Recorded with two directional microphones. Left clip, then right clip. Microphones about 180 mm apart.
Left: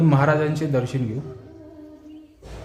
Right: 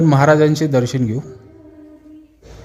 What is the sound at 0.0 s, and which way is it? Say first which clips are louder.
A man's voice: right 7 dB; 40° right (ahead or behind).